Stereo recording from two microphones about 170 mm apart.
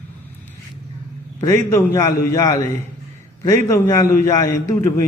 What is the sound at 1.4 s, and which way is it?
Speech, 15° left (ahead or behind).